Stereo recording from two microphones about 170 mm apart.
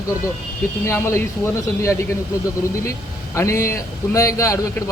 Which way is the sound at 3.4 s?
15° left (ahead or behind).